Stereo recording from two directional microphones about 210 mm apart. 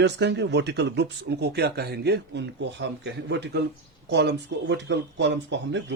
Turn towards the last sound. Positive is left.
turn(degrees=-55)  # may be behind; listen again after turning